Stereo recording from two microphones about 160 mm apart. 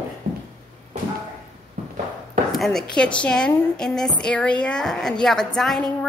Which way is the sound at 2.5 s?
Centre (ahead or behind).